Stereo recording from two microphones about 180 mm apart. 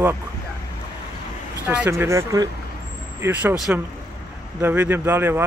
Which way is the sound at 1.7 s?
10° right (ahead or behind).